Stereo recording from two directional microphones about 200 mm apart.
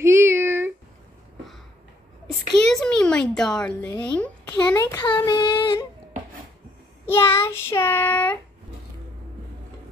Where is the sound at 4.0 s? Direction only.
5° left (ahead or behind); by 5.8 s 25° left (ahead or behind).